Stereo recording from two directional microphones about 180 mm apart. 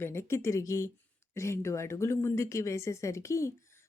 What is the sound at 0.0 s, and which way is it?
Speech, 15° left (ahead or behind).